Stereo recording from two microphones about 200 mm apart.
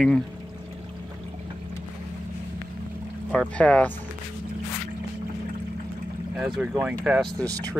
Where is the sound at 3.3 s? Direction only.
5° left (ahead or behind).